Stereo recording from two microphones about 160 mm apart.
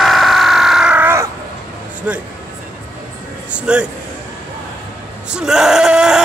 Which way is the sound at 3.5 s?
5° right (ahead or behind).